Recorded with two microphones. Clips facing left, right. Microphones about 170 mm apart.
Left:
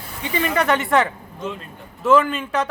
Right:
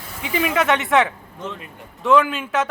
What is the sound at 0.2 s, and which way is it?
A man's voice, 5° right (ahead or behind).